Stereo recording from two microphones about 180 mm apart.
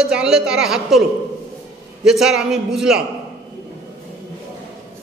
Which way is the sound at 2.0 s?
5° right (ahead or behind).